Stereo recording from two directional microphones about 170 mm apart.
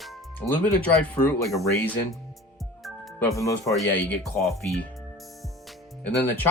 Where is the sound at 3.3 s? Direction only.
20° left (ahead or behind).